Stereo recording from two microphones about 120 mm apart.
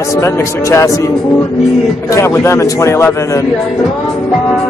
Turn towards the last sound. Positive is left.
turn(degrees=25)  # may be behind; listen again after turning